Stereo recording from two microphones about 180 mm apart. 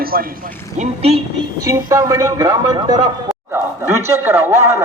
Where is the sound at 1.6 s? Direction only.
15° right (ahead or behind).